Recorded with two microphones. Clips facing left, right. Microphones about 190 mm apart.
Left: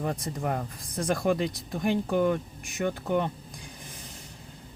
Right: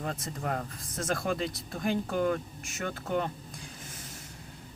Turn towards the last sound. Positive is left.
turn(degrees=15)  # may be behind; listen again after turning